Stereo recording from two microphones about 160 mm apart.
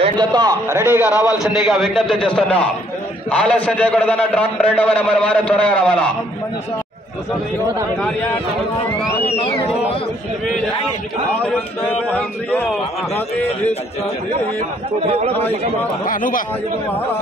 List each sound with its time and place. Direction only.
0.0 s a man's voice: 25° right (ahead or behind)
1.0 s a man's voice: 20° left (ahead or behind)
1.7 s a man's voice: centre (ahead or behind)
9.2 s speech: 40° left (ahead or behind)
11.3 s a man's voice: 10° left (ahead or behind)
15.0 s a man's voice: 40° right (ahead or behind)
16.1 s speech: 60° left (ahead or behind)